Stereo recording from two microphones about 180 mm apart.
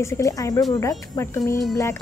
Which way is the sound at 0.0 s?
15° left (ahead or behind).